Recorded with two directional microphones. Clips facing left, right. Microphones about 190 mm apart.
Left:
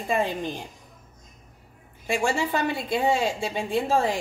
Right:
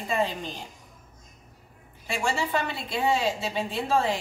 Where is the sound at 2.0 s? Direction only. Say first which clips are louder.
Left 4 dB; 45° left (ahead or behind).